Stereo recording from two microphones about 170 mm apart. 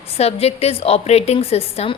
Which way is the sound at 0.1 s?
35° left (ahead or behind).